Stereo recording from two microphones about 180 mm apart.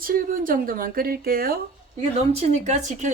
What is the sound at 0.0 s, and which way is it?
Speech, 50° right (ahead or behind).